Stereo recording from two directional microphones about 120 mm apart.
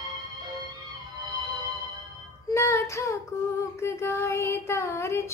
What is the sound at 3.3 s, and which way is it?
Humming, 15° left (ahead or behind).